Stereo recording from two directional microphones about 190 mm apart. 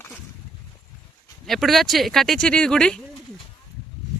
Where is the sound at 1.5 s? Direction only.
Centre (ahead or behind).